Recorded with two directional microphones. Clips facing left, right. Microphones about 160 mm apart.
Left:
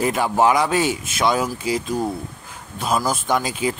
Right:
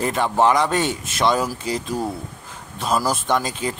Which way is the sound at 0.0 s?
5° left (ahead or behind).